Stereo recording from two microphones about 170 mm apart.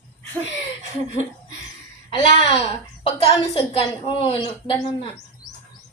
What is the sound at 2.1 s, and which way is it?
A woman's voice, 30° left (ahead or behind).